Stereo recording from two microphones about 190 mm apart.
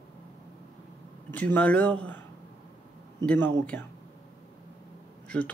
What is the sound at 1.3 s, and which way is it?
Speech, 10° left (ahead or behind).